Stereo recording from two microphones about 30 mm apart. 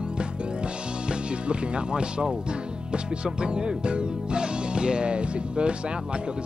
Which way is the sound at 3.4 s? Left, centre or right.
Right.